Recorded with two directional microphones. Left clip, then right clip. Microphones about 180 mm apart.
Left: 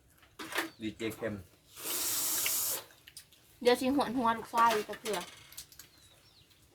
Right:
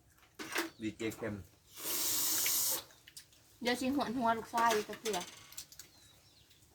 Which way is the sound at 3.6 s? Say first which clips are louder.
Left 7 dB; 30° left (ahead or behind).